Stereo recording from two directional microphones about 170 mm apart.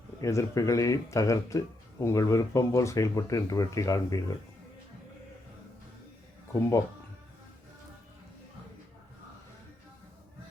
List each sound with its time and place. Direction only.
0.2 s speech: 20° left (ahead or behind)
6.5 s speech: 15° left (ahead or behind)